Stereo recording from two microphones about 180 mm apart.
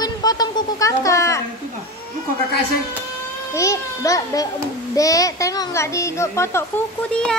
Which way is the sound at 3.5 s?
15° left (ahead or behind).